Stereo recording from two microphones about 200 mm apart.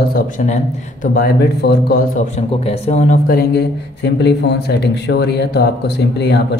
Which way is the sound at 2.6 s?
35° left (ahead or behind).